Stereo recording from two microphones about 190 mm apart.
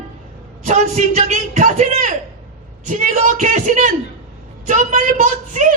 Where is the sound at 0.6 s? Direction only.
40° right (ahead or behind).